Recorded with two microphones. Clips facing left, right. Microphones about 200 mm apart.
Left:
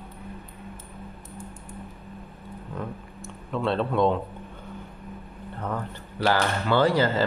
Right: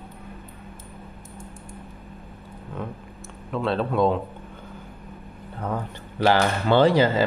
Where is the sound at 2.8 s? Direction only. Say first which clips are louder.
Right 1 dB; centre (ahead or behind).